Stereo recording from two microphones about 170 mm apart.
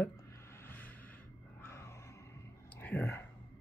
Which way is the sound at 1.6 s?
15° left (ahead or behind).